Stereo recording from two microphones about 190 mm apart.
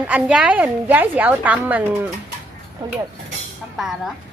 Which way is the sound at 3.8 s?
Centre (ahead or behind).